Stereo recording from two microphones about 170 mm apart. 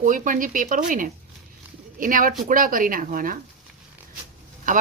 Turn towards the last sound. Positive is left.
turn(degrees=-50)  # may be behind; listen again after turning